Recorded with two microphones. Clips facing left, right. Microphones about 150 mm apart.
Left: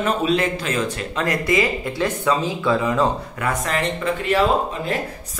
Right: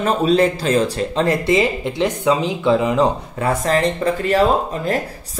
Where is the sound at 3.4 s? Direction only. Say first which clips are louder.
Right 8 dB; 30° right (ahead or behind).